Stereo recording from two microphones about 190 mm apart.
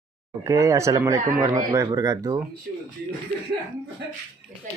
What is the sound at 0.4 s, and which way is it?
Speech, 15° right (ahead or behind).